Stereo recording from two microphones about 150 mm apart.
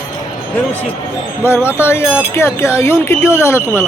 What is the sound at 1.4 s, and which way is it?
Speech, 15° left (ahead or behind).